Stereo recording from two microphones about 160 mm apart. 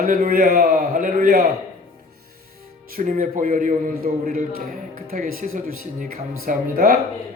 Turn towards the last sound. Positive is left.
turn(degrees=-65)  # may be behind; listen again after turning